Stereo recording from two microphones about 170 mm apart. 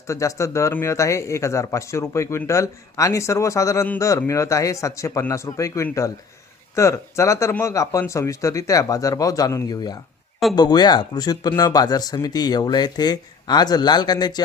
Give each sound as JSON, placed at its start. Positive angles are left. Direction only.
{"t": 0.1, "sound": "speech", "side_deg": 20}